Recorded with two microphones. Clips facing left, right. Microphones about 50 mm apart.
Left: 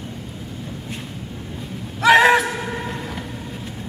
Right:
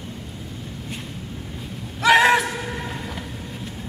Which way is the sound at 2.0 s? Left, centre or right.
Centre.